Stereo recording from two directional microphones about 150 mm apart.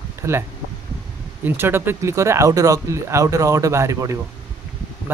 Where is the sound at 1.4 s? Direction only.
15° right (ahead or behind).